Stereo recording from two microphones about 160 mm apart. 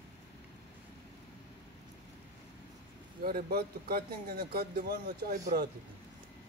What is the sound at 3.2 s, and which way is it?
Speech, 65° right (ahead or behind).